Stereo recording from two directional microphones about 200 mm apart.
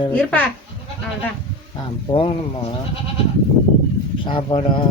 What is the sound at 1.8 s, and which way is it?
Speech, 25° left (ahead or behind).